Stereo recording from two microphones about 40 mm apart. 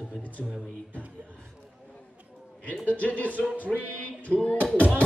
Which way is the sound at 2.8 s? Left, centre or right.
Left.